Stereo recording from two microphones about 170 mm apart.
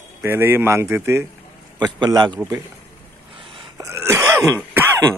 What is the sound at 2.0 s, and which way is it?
Speech, 25° right (ahead or behind).